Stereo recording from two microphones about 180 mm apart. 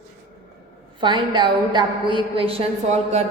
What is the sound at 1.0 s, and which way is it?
A woman's voice, 25° right (ahead or behind).